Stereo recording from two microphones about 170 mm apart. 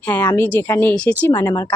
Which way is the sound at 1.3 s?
20° left (ahead or behind).